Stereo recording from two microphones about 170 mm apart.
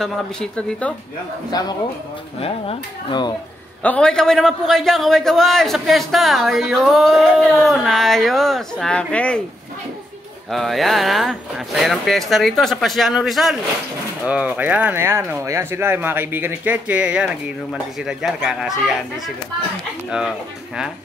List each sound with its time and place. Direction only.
0.0 s a man's voice: 5° left (ahead or behind)
1.5 s speech: 25° left (ahead or behind)
2.4 s speech: 35° left (ahead or behind)
3.8 s a man's voice: 5° left (ahead or behind)
10.5 s a man's voice: centre (ahead or behind)
20.1 s a man's voice: 5° right (ahead or behind)